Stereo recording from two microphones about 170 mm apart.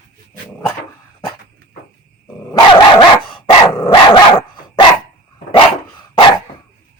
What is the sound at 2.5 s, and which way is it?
Dog, 30° left (ahead or behind).